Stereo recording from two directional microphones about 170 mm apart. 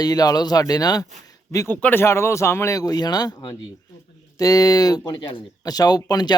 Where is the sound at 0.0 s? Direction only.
20° left (ahead or behind).